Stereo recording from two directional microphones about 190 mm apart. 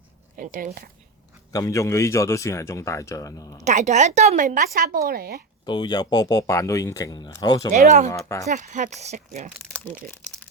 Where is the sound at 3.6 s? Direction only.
40° right (ahead or behind).